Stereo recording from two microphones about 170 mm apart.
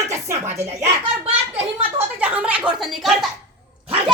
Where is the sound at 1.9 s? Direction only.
10° right (ahead or behind).